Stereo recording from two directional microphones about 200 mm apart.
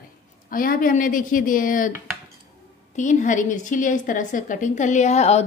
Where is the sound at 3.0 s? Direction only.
40° left (ahead or behind).